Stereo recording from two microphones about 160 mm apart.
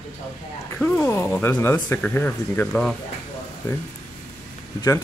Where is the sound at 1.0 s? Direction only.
15° left (ahead or behind).